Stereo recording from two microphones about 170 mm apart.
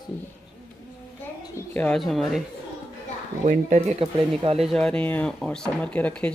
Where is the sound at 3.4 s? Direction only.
40° right (ahead or behind).